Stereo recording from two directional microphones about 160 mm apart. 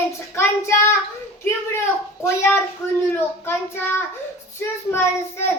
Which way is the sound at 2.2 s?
15° left (ahead or behind).